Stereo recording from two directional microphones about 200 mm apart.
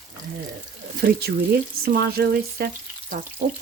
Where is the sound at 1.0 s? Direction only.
50° right (ahead or behind).